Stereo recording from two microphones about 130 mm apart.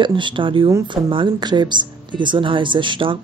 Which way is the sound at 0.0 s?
40° right (ahead or behind).